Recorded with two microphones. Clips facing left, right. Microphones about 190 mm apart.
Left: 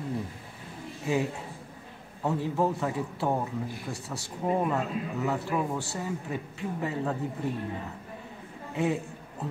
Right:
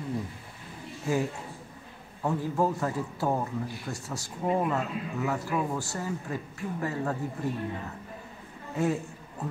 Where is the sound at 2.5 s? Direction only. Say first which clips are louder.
Even; centre (ahead or behind).